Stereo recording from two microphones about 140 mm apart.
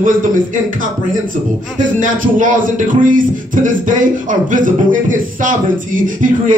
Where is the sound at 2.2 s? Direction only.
70° right (ahead or behind).